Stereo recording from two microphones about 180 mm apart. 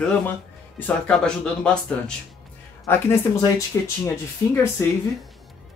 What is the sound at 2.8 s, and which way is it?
Speech, 15° left (ahead or behind).